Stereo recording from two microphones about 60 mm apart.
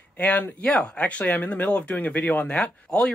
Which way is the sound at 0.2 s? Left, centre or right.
Left.